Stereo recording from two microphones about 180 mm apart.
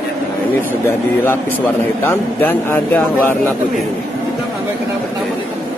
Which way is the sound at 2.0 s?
10° left (ahead or behind).